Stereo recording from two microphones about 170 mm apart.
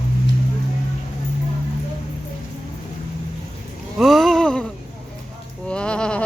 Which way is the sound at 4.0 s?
Centre (ahead or behind).